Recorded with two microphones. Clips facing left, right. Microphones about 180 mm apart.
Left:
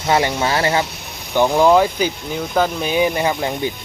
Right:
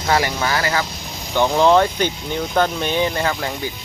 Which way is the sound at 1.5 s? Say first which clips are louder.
Left 1 dB; 5° left (ahead or behind).